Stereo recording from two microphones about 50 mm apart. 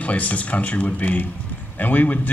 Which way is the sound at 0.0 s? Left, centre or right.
Left.